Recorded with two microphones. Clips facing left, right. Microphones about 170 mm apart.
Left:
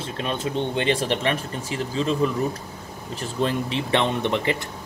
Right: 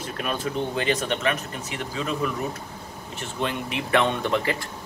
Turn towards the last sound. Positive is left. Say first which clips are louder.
# left 1 dB
turn(degrees=20)  # may be behind; listen again after turning